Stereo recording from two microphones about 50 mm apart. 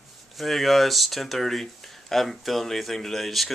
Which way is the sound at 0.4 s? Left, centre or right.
Centre.